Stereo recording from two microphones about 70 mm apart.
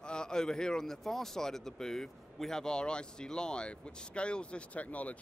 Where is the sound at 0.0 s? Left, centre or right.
Centre.